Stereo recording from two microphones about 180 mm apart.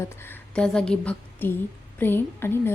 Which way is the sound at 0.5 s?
5° left (ahead or behind).